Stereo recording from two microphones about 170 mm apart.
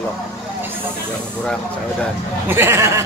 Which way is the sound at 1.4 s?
5° left (ahead or behind).